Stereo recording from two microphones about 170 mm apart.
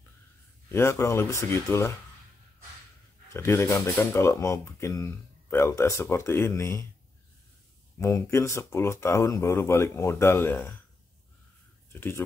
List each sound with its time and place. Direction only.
0.7 s speech: 15° left (ahead or behind)
3.3 s speech: 15° left (ahead or behind)
8.0 s speech: 15° left (ahead or behind)
11.9 s speech: 15° left (ahead or behind)